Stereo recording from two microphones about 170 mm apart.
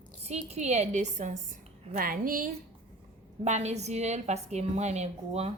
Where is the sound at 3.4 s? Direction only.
40° right (ahead or behind).